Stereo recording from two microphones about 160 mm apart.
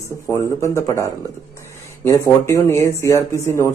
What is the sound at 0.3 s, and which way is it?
Speech, 20° left (ahead or behind).